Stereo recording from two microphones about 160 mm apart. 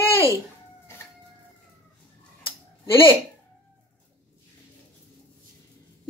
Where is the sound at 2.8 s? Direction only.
15° left (ahead or behind).